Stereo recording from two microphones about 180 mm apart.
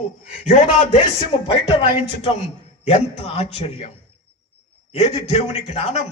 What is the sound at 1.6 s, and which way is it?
Speech, 25° left (ahead or behind).